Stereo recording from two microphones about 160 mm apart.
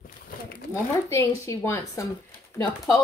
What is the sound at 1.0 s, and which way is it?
Speech, 20° left (ahead or behind).